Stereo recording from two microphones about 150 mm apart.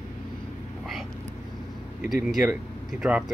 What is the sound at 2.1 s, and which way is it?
Speech, 5° right (ahead or behind).